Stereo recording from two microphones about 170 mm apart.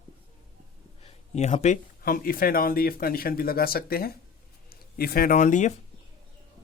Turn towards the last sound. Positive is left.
turn(degrees=45)  # may be behind; listen again after turning